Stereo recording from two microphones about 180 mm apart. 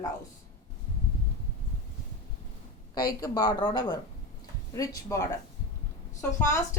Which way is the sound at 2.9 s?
20° left (ahead or behind).